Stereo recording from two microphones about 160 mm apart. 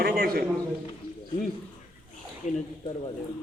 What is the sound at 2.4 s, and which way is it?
Speech, 50° left (ahead or behind).